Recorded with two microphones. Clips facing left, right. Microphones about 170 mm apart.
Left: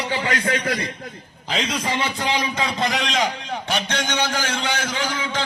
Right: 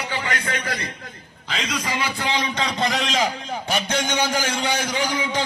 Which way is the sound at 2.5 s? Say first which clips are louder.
Even; centre (ahead or behind).